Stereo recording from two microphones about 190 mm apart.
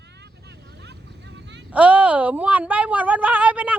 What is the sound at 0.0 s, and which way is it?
Vehicle, 60° right (ahead or behind).